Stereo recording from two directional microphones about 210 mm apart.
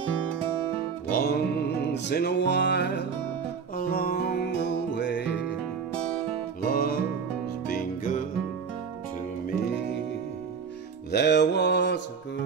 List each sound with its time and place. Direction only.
1.1 s music: 45° left (ahead or behind)
6.6 s music: 45° left (ahead or behind)
11.1 s mantra: 55° left (ahead or behind)